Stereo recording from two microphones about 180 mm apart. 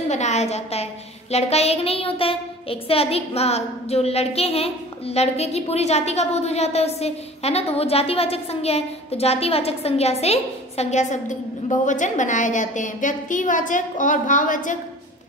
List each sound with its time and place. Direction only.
0.1 s child singing: 40° left (ahead or behind)